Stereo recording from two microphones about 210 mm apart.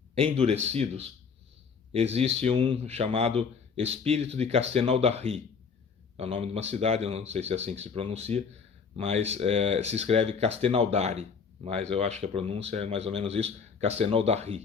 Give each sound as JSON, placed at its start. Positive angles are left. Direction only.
{"t": 0.1, "sound": "a man's voice", "side_deg": -30}